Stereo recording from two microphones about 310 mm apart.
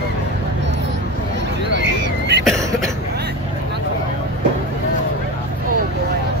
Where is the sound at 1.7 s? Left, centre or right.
Right.